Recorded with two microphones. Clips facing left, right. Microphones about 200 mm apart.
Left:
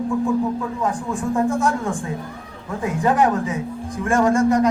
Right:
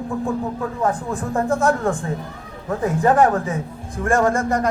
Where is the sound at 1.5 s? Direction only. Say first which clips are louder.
Right 2 dB; 45° right (ahead or behind).